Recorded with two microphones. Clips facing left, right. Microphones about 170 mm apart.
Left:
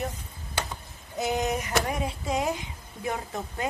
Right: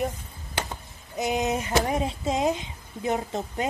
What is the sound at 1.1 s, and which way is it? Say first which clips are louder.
Speech: right 2 dB; 20° right (ahead or behind).